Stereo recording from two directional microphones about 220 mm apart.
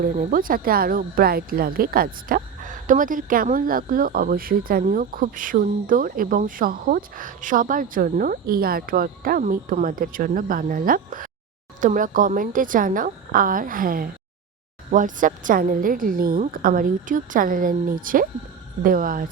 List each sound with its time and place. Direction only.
0.0 s speech: 40° right (ahead or behind)